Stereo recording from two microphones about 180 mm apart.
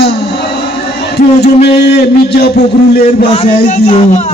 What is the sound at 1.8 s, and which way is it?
Speech, 65° left (ahead or behind).